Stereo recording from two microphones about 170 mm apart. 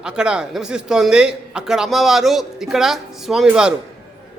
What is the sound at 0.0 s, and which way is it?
A man's voice, 5° right (ahead or behind).